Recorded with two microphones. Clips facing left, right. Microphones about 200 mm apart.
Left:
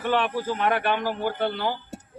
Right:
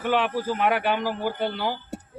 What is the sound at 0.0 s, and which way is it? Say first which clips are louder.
A man's voice: right 1 dB; 10° right (ahead or behind).